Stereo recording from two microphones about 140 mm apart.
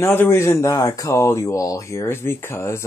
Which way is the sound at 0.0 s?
15° left (ahead or behind).